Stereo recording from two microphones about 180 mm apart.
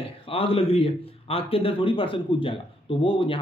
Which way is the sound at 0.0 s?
30° left (ahead or behind).